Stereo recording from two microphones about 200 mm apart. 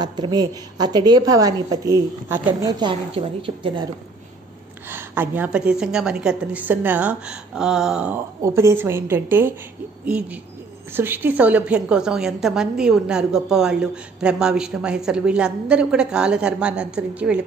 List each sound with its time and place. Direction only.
0.0 s a woman's voice: 20° right (ahead or behind)
4.8 s a woman's voice: 10° right (ahead or behind)